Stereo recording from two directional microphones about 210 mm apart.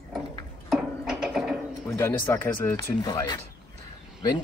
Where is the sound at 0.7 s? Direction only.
Centre (ahead or behind).